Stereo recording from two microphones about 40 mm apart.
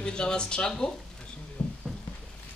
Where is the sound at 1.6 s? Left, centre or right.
Left.